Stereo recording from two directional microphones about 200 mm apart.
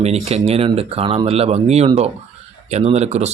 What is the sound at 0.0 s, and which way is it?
Speech, 30° right (ahead or behind).